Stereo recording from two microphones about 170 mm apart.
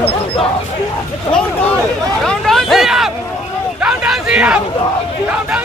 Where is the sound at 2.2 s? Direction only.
Centre (ahead or behind).